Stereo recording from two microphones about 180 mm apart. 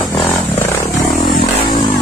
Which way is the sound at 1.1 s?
60° left (ahead or behind).